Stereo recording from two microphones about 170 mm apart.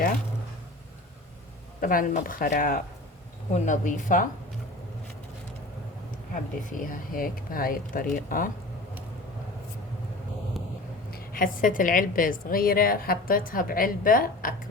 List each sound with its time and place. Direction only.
1.8 s a woman's voice: 55° left (ahead or behind)
6.3 s a woman's voice: 50° left (ahead or behind)
11.1 s a woman's voice: 55° left (ahead or behind)